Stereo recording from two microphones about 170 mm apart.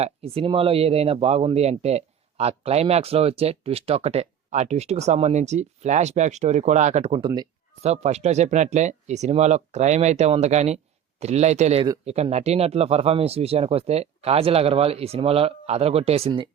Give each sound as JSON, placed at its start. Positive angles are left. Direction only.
{"t": 0.0, "sound": "speech", "side_deg": -35}
{"t": 7.8, "sound": "speech", "side_deg": -40}